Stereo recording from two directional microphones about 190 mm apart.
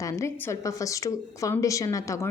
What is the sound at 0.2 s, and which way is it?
A woman's voice, 15° left (ahead or behind).